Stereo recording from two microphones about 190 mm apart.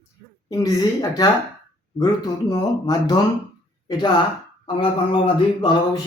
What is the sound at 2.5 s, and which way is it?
Speech, 20° left (ahead or behind).